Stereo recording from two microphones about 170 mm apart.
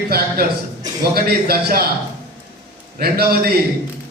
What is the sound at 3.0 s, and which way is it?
Speech, 65° right (ahead or behind).